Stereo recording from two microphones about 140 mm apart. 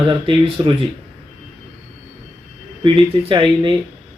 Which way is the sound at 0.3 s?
40° right (ahead or behind).